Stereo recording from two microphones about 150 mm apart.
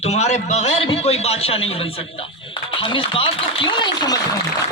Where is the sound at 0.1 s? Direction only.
50° left (ahead or behind).